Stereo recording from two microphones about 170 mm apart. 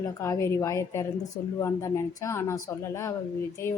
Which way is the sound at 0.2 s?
15° left (ahead or behind).